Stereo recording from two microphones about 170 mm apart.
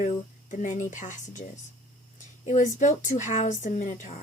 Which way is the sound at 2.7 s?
45° left (ahead or behind).